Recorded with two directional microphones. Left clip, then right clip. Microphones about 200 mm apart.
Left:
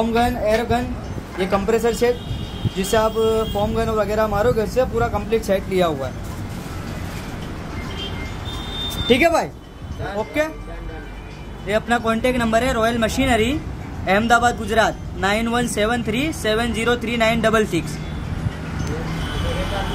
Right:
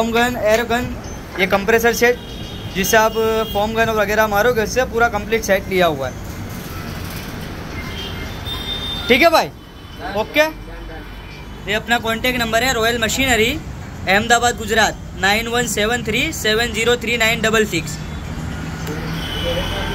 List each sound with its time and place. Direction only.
0.0 s speech: 5° left (ahead or behind)
9.0 s speech: 15° left (ahead or behind)
11.6 s a man's voice: 20° left (ahead or behind)